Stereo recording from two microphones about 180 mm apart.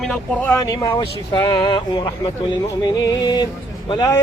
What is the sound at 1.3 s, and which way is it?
Music, 25° left (ahead or behind).